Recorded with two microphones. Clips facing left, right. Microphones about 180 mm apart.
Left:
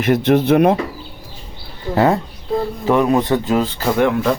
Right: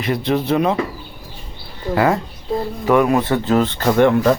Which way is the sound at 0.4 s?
60° left (ahead or behind).